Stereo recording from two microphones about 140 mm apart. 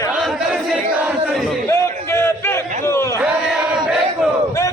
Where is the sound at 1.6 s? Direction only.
20° left (ahead or behind).